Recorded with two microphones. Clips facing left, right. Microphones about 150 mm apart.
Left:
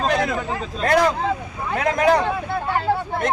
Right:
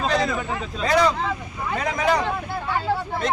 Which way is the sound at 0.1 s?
55° left (ahead or behind).